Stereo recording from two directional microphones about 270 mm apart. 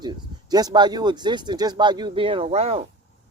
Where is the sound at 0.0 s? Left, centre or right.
Centre.